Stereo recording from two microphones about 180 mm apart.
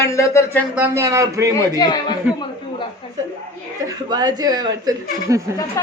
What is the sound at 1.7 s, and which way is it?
A man's voice, 20° left (ahead or behind).